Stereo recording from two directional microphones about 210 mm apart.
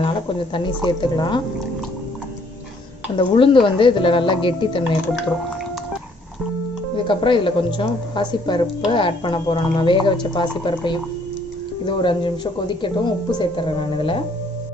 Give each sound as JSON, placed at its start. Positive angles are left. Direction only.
{"t": 0.0, "sound": "a woman's voice", "side_deg": 25}
{"t": 3.2, "sound": "a woman's voice", "side_deg": 25}
{"t": 7.1, "sound": "a woman's voice", "side_deg": 25}